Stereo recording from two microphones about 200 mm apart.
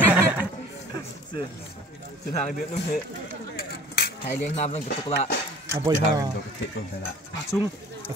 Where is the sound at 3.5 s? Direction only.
50° left (ahead or behind).